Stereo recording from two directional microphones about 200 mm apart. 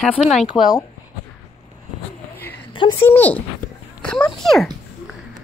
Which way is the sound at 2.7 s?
25° left (ahead or behind).